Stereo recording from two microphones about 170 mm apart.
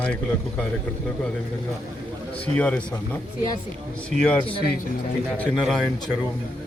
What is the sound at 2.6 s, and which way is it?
Speech, 10° left (ahead or behind).